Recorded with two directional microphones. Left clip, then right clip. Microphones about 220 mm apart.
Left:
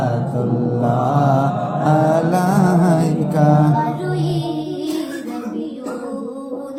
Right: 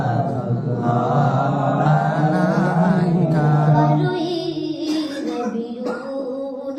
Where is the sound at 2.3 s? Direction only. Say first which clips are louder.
Left 3 dB; 40° left (ahead or behind).